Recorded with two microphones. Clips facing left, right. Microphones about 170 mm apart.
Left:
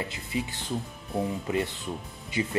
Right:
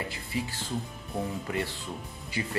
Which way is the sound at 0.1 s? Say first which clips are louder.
Left 2 dB; 20° left (ahead or behind).